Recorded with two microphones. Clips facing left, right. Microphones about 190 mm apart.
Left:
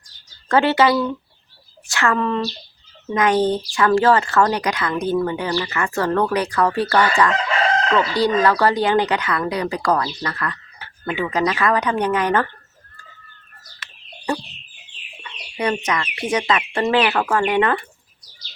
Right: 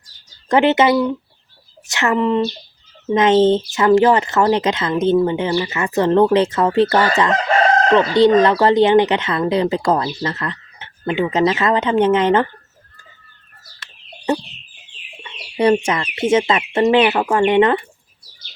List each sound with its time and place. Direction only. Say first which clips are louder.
0.4 s speech: right 2 dB; 20° right (ahead or behind)
7.5 s chicken: right 5 dB; 45° right (ahead or behind)
7.9 s speech: right 7 dB; 20° right (ahead or behind)
15.2 s speech: right 7 dB; 30° right (ahead or behind)